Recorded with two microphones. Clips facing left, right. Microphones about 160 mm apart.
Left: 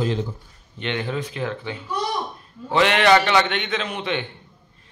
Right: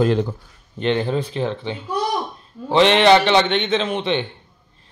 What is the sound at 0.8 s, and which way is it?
Speech, 35° right (ahead or behind).